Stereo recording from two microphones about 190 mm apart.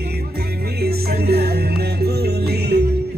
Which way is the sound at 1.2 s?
55° right (ahead or behind).